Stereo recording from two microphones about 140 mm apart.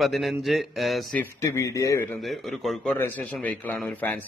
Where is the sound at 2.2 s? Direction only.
Centre (ahead or behind).